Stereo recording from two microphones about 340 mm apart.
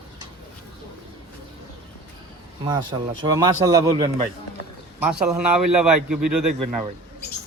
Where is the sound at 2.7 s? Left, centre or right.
Centre.